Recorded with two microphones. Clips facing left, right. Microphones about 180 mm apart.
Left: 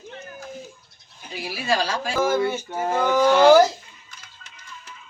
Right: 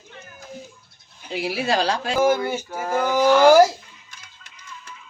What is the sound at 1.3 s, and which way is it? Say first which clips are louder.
Speech: right 2 dB; 70° right (ahead or behind).